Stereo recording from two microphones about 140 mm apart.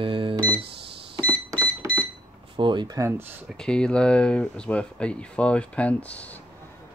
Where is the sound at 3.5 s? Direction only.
5° left (ahead or behind).